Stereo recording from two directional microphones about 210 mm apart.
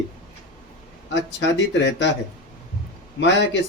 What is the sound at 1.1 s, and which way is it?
Speech, 55° left (ahead or behind).